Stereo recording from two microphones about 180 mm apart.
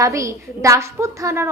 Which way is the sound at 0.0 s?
15° right (ahead or behind).